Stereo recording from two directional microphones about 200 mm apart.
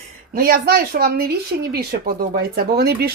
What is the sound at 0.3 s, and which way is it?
Speech, 50° right (ahead or behind).